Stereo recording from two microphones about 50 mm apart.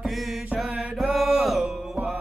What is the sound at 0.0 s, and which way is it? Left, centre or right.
Music, centre.